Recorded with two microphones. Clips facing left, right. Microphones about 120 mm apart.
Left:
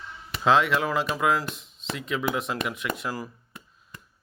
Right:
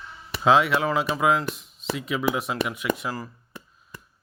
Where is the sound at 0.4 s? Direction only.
5° right (ahead or behind).